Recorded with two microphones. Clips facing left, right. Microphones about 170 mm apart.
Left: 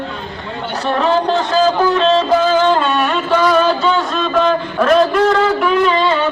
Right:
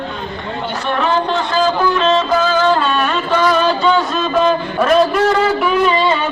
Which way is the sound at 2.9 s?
15° left (ahead or behind).